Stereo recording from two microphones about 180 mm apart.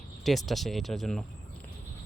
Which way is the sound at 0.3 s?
Centre (ahead or behind).